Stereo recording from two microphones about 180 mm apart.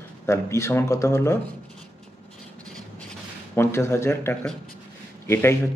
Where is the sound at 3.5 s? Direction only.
15° left (ahead or behind).